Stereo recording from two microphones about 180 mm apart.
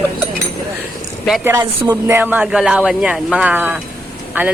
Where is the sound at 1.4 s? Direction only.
15° right (ahead or behind).